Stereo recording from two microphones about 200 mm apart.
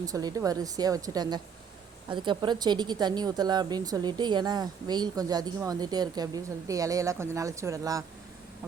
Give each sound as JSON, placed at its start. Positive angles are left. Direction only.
{"t": 0.0, "sound": "a woman's voice", "side_deg": -20}